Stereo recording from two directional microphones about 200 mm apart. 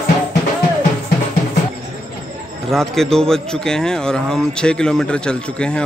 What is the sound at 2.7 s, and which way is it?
Speech, centre (ahead or behind).